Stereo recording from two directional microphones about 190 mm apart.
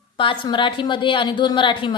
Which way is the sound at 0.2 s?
25° left (ahead or behind).